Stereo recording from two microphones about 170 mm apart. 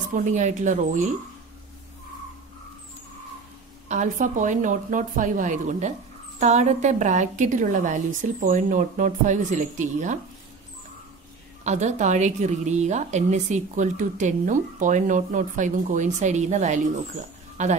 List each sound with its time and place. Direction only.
0.1 s a woman's voice: 50° right (ahead or behind)
3.9 s a woman's voice: 45° right (ahead or behind)
11.6 s a woman's voice: 40° right (ahead or behind)